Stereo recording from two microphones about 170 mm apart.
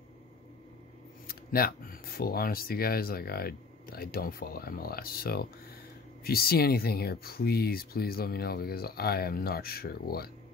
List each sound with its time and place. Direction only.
1.2 s speech: 60° left (ahead or behind)